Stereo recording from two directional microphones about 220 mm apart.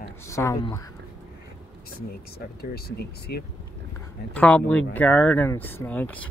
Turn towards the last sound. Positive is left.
turn(degrees=5)  # may be behind; listen again after turning